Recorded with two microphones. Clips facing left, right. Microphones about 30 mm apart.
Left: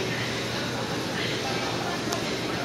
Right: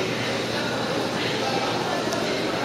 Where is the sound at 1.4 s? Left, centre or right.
Right.